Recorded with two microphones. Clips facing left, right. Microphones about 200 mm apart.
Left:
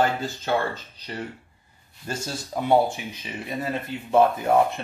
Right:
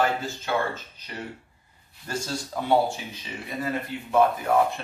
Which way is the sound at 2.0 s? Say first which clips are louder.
Right 1 dB; 20° left (ahead or behind).